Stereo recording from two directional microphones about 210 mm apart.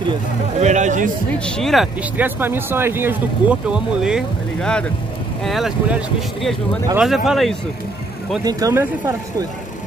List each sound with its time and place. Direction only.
0.6 s speech: 35° right (ahead or behind)
1.4 s speech: 5° left (ahead or behind)
8.5 s speech: 15° right (ahead or behind)